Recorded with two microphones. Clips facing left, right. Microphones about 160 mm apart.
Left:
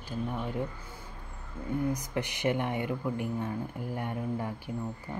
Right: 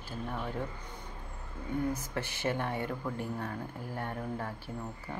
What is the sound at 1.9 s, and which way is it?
Speech, 15° left (ahead or behind).